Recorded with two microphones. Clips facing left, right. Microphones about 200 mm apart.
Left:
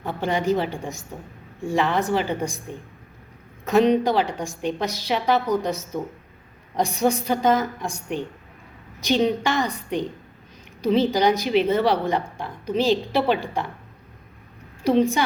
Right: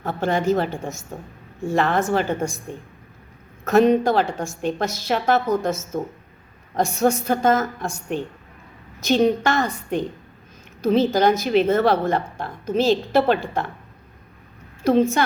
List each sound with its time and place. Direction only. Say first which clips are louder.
0.0 s a woman's voice: right 2 dB; 15° left (ahead or behind)
3.6 s a woman's voice: right 2 dB; 15° left (ahead or behind)
14.8 s a woman's voice: right 1 dB; 15° left (ahead or behind)